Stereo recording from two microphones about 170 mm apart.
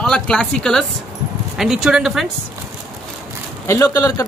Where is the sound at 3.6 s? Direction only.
15° left (ahead or behind).